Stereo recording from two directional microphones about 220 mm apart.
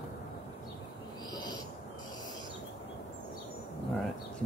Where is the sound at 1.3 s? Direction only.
20° left (ahead or behind).